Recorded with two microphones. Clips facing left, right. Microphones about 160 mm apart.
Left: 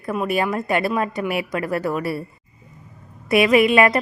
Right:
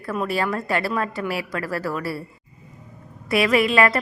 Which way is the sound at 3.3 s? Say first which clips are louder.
Left 4 dB; 20° left (ahead or behind).